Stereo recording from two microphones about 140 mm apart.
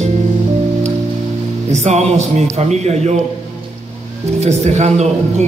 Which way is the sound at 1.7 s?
50° right (ahead or behind).